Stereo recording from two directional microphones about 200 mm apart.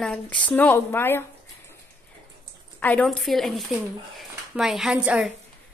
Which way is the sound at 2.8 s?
5° left (ahead or behind).